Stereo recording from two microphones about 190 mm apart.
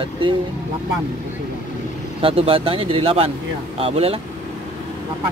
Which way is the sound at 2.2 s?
30° right (ahead or behind).